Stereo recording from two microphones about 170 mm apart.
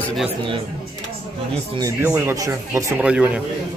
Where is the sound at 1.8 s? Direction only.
15° right (ahead or behind).